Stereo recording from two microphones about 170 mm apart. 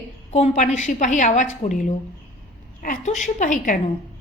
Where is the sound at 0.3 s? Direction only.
40° left (ahead or behind).